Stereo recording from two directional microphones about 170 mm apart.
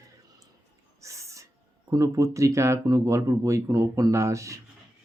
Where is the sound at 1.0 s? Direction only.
20° right (ahead or behind).